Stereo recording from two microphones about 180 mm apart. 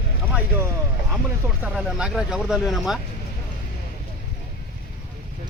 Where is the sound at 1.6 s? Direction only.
5° right (ahead or behind).